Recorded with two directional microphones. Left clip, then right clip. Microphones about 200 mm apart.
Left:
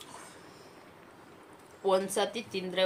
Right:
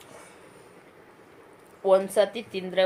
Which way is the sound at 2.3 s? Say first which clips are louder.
Right 3 dB; 45° left (ahead or behind).